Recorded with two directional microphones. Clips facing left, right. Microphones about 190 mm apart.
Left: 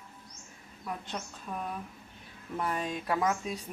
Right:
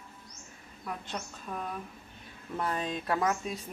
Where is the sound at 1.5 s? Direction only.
Centre (ahead or behind).